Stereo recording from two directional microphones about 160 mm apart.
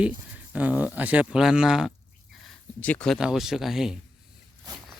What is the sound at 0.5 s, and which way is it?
Speech, 10° right (ahead or behind).